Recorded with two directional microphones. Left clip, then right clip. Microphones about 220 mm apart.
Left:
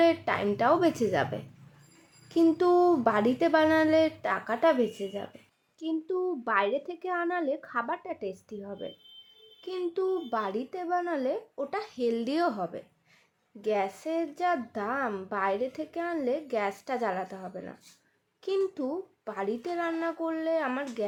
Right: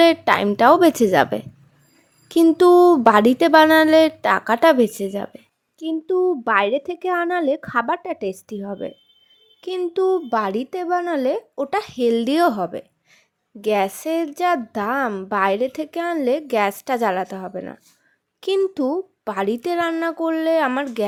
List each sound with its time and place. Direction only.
0.0 s a woman's voice: 40° right (ahead or behind)
5.8 s a woman's voice: 30° right (ahead or behind)